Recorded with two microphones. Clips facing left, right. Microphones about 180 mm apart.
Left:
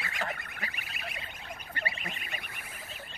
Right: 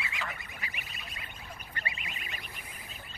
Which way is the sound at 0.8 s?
70° left (ahead or behind).